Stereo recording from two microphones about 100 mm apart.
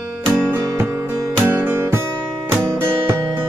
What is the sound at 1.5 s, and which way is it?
Music, 25° right (ahead or behind).